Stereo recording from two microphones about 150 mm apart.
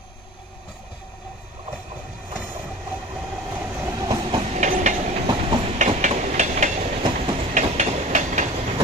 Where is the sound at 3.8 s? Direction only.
25° right (ahead or behind).